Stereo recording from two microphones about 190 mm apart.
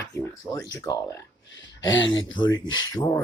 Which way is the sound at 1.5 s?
80° left.